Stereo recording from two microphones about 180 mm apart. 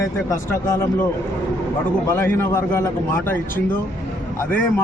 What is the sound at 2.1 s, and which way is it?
Speech, 10° left (ahead or behind).